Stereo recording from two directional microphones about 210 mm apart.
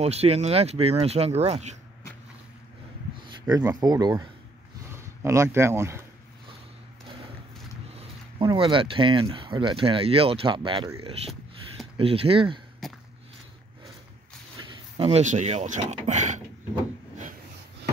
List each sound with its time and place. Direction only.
0.0 s speech: 30° right (ahead or behind)
3.3 s speech: 15° right (ahead or behind)
7.9 s a sound: 30° right (ahead or behind)
8.5 s speech: 25° right (ahead or behind)
12.0 s speech: 25° right (ahead or behind)
12.8 s a sound: centre (ahead or behind)
14.6 s speech: 25° right (ahead or behind)